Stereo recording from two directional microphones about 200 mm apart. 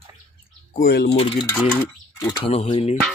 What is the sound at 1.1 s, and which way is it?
Speech, 30° left (ahead or behind).